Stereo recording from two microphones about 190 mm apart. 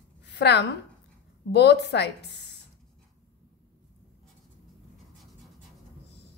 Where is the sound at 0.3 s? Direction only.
65° left (ahead or behind).